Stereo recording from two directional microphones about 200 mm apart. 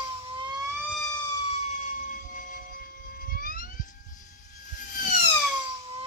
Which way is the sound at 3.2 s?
45° left (ahead or behind).